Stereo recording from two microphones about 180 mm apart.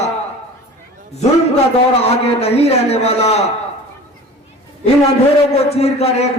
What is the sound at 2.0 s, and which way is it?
A man's voice, 35° left (ahead or behind).